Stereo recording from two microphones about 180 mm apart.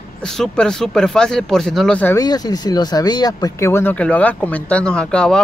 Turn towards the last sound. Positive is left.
turn(degrees=5)  # may be behind; listen again after turning